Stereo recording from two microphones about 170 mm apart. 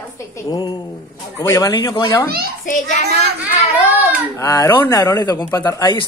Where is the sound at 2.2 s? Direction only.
65° right (ahead or behind).